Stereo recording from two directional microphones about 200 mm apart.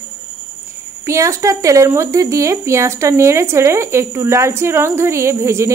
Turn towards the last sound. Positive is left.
turn(degrees=-15)  # may be behind; listen again after turning